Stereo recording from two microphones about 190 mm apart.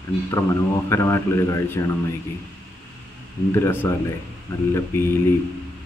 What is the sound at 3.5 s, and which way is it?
Speech, 15° left (ahead or behind).